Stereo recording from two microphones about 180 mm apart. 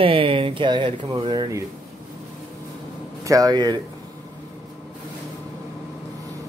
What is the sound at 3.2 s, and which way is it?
Speech, 20° right (ahead or behind).